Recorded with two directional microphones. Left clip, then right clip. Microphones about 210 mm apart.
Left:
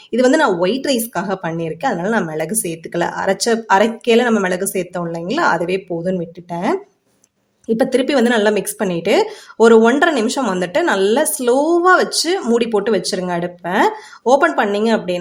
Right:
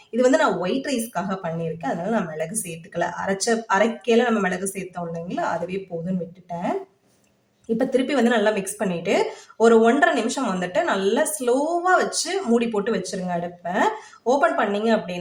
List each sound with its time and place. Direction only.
0.2 s a woman's voice: 40° left (ahead or behind)
7.8 s a woman's voice: 40° left (ahead or behind)